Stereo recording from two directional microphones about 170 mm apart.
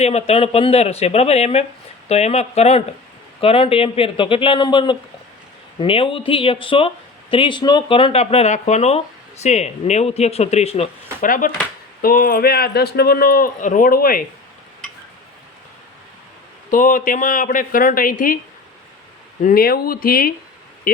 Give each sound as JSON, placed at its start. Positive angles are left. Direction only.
{"t": 0.0, "sound": "speech", "side_deg": 40}
{"t": 11.3, "sound": "a man's voice", "side_deg": 55}
{"t": 16.7, "sound": "speech", "side_deg": 50}
{"t": 19.4, "sound": "a man's voice", "side_deg": 55}